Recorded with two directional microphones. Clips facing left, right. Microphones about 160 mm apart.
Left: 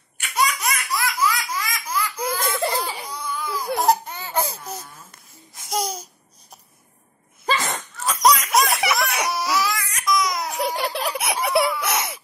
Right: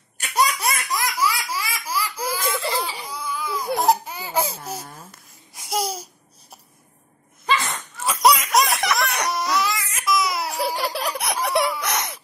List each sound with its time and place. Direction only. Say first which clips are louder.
0.2 s laughter: right 1 dB; 40° right (ahead or behind)
0.8 s laughter: left 3 dB; 20° right (ahead or behind)
2.6 s baby cry: left 5 dB; 50° left (ahead or behind)
3.1 s baby cry: even; centre (ahead or behind)
4.6 s a sound: right 2 dB; 30° right (ahead or behind)
5.1 s babbling: even; 5° right (ahead or behind)
8.0 s laughter: right 1 dB; 5° right (ahead or behind)
11.8 s a sound: left 2 dB; 5° left (ahead or behind)